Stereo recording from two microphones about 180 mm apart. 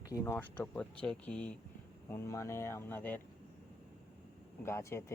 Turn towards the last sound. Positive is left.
turn(degrees=15)  # may be behind; listen again after turning